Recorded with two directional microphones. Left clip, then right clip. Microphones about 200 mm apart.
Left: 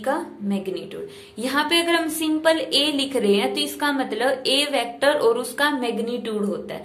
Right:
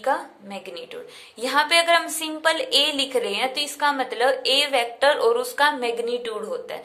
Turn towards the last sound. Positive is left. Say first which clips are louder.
# left 2 dB
turn(degrees=-15)  # may be behind; listen again after turning